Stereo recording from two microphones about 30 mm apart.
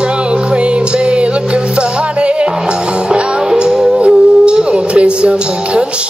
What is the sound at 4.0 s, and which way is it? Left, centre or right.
Music, right.